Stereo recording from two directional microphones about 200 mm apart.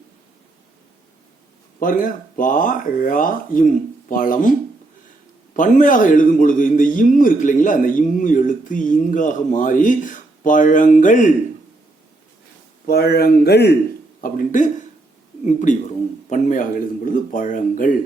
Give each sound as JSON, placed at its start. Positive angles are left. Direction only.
{"t": 1.8, "sound": "a man's voice", "side_deg": 45}
{"t": 5.5, "sound": "a man's voice", "side_deg": 40}
{"t": 12.9, "sound": "speech", "side_deg": 50}
{"t": 14.2, "sound": "a man's voice", "side_deg": 40}